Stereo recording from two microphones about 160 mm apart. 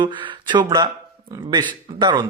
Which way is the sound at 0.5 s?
25° right (ahead or behind).